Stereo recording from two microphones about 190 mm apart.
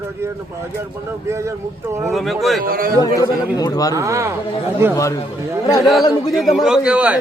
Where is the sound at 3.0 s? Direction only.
20° left (ahead or behind).